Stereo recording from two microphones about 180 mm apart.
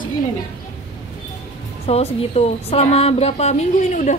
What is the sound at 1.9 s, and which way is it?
Speech, 35° left (ahead or behind).